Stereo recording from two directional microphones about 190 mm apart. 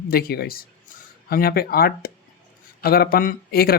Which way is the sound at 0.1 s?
55° left (ahead or behind).